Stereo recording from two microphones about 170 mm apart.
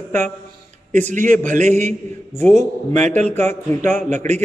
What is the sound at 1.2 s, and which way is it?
A man's voice, 50° right (ahead or behind).